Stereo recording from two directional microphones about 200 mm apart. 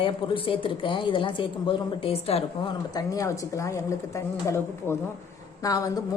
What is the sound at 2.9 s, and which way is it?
A woman's voice, 15° left (ahead or behind).